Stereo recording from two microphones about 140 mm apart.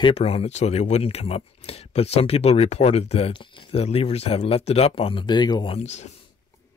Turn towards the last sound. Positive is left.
turn(degrees=55)  # may be behind; listen again after turning